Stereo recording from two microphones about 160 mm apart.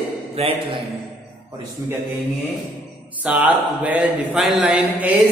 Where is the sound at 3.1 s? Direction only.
10° right (ahead or behind).